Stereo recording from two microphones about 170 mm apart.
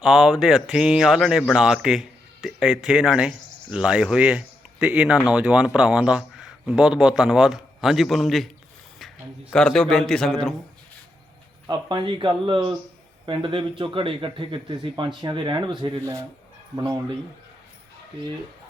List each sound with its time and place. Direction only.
0.0 s a man's voice: centre (ahead or behind)
11.6 s speech: 25° right (ahead or behind)